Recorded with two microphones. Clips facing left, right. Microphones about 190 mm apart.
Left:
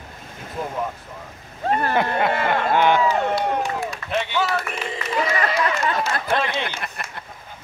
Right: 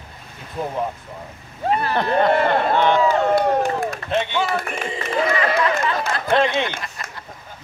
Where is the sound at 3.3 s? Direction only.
45° right (ahead or behind).